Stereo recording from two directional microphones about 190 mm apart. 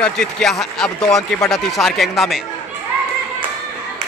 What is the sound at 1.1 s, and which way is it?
Speech, 15° left (ahead or behind).